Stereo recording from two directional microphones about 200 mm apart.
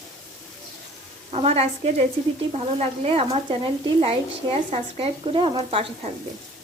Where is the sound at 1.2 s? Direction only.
30° right (ahead or behind).